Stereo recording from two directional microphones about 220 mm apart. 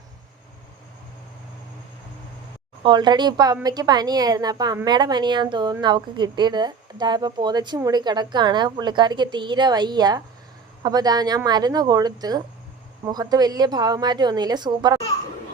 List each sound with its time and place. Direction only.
2.8 s a woman's voice: 20° right (ahead or behind)